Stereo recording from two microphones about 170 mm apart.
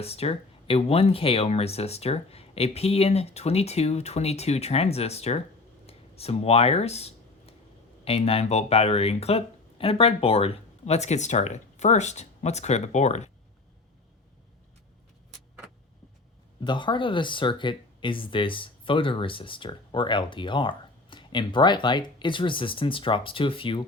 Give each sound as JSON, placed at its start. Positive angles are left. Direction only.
{"t": 0.0, "sound": "speech", "side_deg": 35}
{"t": 5.8, "sound": "a sound", "side_deg": 35}
{"t": 8.0, "sound": "speech", "side_deg": 35}
{"t": 16.6, "sound": "speech", "side_deg": 30}